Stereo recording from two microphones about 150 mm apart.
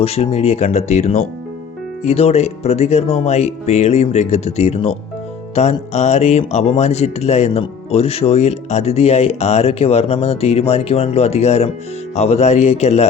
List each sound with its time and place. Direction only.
0.0 s speech: 45° left (ahead or behind)